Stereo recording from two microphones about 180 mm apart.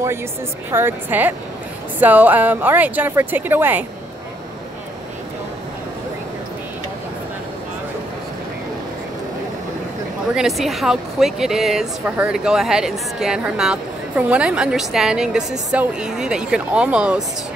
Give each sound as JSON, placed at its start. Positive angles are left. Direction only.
{"t": 0.7, "sound": "speech", "side_deg": -10}
{"t": 10.3, "sound": "speech", "side_deg": 0}